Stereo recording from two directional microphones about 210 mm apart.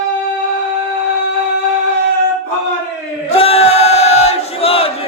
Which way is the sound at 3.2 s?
30° left (ahead or behind).